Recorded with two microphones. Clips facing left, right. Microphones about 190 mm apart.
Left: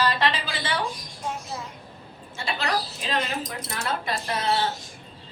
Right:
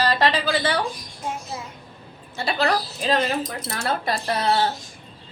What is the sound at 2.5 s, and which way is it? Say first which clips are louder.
A woman's voice: right 5 dB; 35° right (ahead or behind).